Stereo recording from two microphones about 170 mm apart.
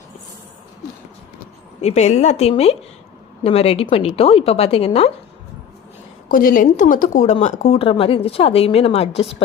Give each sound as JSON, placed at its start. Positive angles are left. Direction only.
{"t": 1.8, "sound": "a woman's voice", "side_deg": 40}
{"t": 6.2, "sound": "a woman's voice", "side_deg": 55}